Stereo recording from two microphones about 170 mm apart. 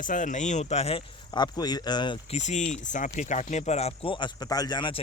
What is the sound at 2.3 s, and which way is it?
Speech, 45° left (ahead or behind).